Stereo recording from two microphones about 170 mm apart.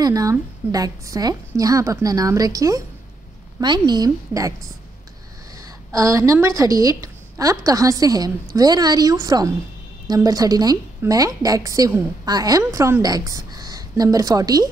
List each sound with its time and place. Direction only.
0.0 s a woman's voice: 20° right (ahead or behind)
5.9 s a woman's voice: 20° right (ahead or behind)